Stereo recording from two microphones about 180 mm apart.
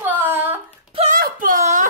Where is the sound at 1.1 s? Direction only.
50° right (ahead or behind).